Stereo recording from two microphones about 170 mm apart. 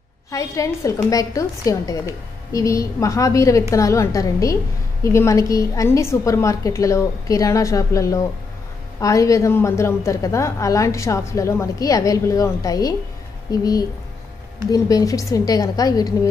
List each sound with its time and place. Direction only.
0.3 s a woman's voice: 20° left (ahead or behind)